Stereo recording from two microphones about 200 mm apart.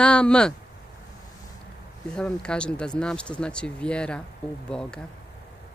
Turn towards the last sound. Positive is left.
turn(degrees=5)  # may be behind; listen again after turning